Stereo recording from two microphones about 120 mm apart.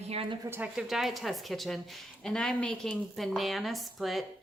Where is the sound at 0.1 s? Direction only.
50° right (ahead or behind).